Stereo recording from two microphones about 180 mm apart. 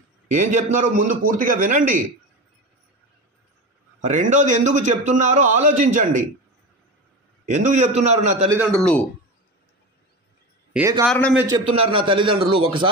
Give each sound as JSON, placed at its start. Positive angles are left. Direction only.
{"t": 0.3, "sound": "a man's voice", "side_deg": -40}
{"t": 4.0, "sound": "a man's voice", "side_deg": -45}
{"t": 7.4, "sound": "a man's voice", "side_deg": -40}
{"t": 8.7, "sound": "speech", "side_deg": 5}
{"t": 10.7, "sound": "a man's voice", "side_deg": -15}
{"t": 11.1, "sound": "speech", "side_deg": 5}
{"t": 11.7, "sound": "speech", "side_deg": -30}